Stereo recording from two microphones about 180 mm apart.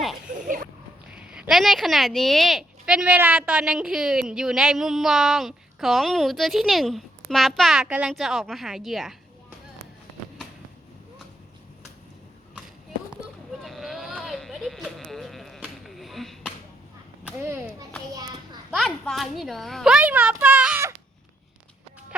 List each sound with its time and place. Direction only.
0.4 s a sound: 50° right (ahead or behind)
1.1 s speech: 5° right (ahead or behind)
13.6 s sheep: centre (ahead or behind)
17.2 s whip: 15° right (ahead or behind)
18.7 s a child's voice: centre (ahead or behind)